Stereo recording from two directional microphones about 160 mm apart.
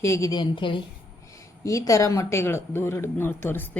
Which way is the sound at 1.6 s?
20° left (ahead or behind).